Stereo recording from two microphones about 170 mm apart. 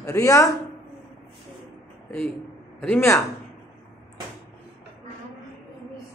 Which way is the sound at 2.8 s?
15° left (ahead or behind).